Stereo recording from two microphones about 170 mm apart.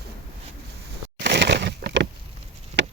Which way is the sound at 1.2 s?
85° right.